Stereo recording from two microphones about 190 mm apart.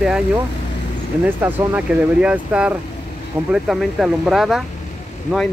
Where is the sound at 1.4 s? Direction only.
10° right (ahead or behind).